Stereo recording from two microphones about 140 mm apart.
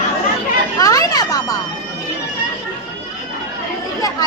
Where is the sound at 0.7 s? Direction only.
25° left (ahead or behind).